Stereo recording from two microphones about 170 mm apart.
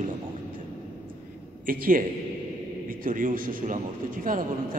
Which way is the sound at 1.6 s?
55° right (ahead or behind).